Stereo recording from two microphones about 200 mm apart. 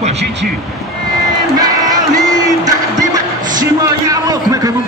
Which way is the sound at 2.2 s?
20° right (ahead or behind).